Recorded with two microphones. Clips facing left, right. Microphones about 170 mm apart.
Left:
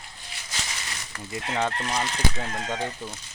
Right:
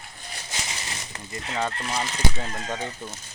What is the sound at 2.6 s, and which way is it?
Speech, 10° left (ahead or behind).